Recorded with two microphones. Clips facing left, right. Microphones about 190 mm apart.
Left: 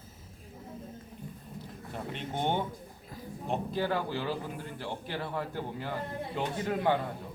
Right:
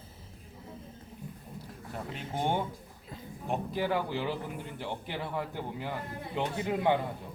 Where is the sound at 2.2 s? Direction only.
10° right (ahead or behind).